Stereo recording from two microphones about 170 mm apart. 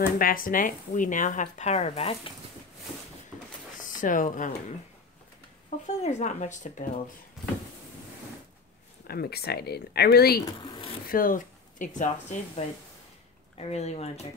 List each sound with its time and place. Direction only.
0.2 s speech: 55° left (ahead or behind); by 2.3 s 35° left (ahead or behind)
3.8 s speech: 50° left (ahead or behind)
9.0 s speech: 65° left (ahead or behind)
10.6 s a sound: 30° left (ahead or behind)
11.1 s speech: 55° left (ahead or behind); by 14.2 s 40° left (ahead or behind)